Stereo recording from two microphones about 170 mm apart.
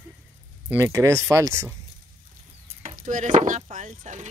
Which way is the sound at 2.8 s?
45° right (ahead or behind).